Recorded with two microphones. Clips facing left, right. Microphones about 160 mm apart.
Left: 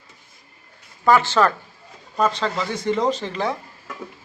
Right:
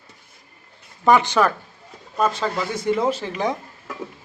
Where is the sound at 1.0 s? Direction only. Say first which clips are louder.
Even; 15° right (ahead or behind).